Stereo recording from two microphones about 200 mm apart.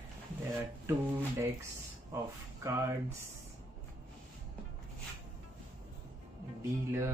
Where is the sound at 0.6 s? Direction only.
10° right (ahead or behind).